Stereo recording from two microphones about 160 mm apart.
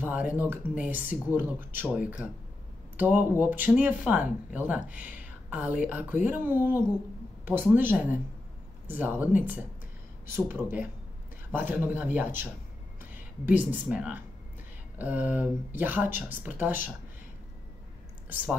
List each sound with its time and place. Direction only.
0.0 s speech: 10° right (ahead or behind)
18.3 s speech: 10° right (ahead or behind)